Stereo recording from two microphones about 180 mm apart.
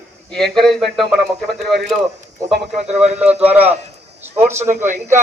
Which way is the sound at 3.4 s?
10° right (ahead or behind).